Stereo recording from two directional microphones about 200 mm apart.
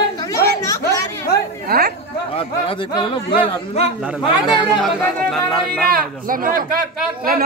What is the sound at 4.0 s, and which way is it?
Speech, 5° right (ahead or behind).